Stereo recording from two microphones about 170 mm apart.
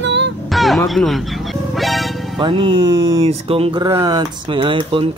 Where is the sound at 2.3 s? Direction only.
30° right (ahead or behind).